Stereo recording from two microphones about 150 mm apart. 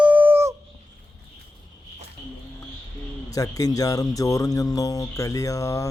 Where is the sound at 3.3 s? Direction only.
25° left (ahead or behind).